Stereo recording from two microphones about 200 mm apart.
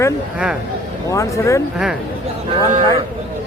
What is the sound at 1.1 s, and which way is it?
Speech, 15° left (ahead or behind).